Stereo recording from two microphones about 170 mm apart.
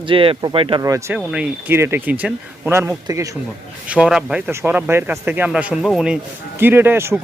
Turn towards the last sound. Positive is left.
turn(degrees=-15)  # may be behind; listen again after turning